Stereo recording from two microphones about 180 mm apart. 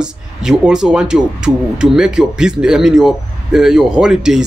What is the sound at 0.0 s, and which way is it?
Speech, 5° right (ahead or behind).